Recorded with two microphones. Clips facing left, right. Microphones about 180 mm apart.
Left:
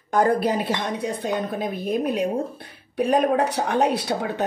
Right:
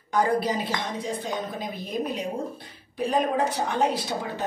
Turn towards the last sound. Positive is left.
turn(degrees=70)  # may be behind; listen again after turning